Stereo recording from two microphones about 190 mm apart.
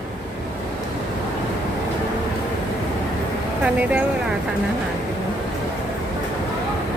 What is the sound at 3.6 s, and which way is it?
Speech, 5° right (ahead or behind).